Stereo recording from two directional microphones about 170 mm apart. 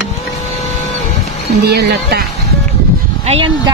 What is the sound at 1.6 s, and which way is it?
Speech, 70° right (ahead or behind).